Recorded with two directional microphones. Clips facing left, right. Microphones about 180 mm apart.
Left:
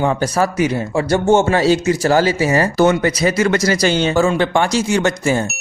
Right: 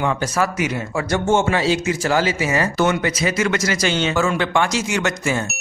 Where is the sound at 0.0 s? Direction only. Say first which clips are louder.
Left 4 dB; 35° left (ahead or behind).